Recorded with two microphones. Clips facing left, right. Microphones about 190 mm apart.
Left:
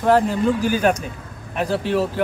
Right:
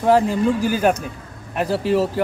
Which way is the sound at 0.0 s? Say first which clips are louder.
Right 1 dB; 10° right (ahead or behind).